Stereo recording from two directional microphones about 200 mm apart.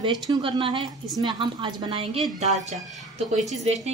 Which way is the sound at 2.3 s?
35° right (ahead or behind).